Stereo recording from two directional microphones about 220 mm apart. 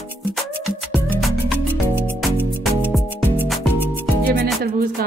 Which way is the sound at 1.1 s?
5° right (ahead or behind).